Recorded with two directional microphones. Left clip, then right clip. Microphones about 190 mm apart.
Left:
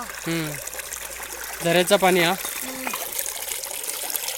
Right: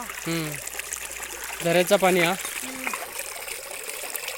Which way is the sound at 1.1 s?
30° left (ahead or behind).